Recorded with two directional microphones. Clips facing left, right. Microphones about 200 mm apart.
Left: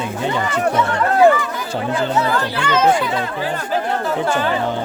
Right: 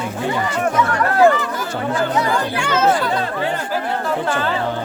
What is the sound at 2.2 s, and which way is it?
Speech, 15° right (ahead or behind).